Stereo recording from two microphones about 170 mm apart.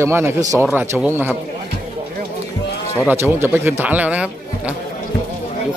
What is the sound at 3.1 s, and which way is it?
Speech, 15° right (ahead or behind).